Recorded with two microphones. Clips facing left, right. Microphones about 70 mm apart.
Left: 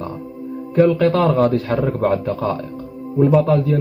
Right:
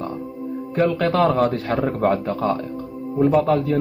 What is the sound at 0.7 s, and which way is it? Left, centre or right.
Speech, centre.